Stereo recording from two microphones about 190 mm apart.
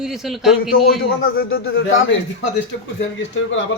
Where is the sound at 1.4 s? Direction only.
90° left.